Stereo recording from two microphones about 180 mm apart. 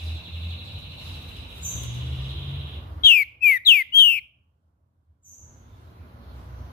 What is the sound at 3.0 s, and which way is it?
Bird, 55° left (ahead or behind).